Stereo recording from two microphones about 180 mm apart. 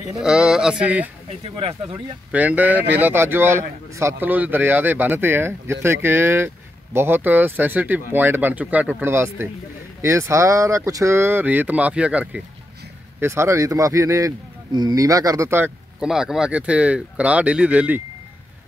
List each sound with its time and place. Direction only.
0.0 s speech: 5° right (ahead or behind)
1.4 s speech: 30° right (ahead or behind)
2.3 s speech: 10° right (ahead or behind)